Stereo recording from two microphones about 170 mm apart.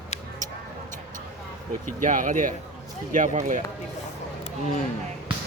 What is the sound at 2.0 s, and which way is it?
Speech, 50° right (ahead or behind).